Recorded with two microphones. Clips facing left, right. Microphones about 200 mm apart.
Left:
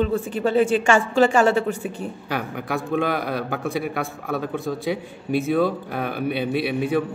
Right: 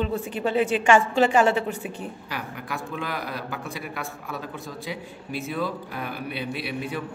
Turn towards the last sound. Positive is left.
turn(degrees=60)  # may be behind; listen again after turning